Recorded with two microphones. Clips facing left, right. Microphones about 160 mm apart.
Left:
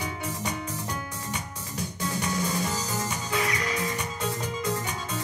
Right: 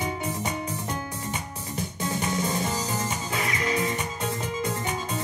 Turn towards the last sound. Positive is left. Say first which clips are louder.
# right 2 dB
turn(degrees=-25)  # may be behind; listen again after turning